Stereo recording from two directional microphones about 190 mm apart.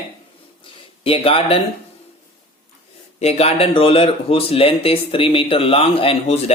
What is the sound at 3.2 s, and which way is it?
Speech, 35° left (ahead or behind).